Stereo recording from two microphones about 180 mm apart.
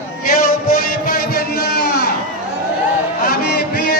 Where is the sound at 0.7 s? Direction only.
50° left (ahead or behind).